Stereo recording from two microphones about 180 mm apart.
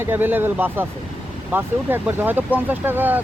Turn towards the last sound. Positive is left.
turn(degrees=-10)  # may be behind; listen again after turning